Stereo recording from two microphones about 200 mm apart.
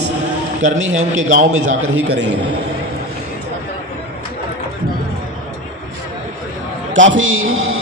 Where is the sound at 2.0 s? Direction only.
60° right (ahead or behind).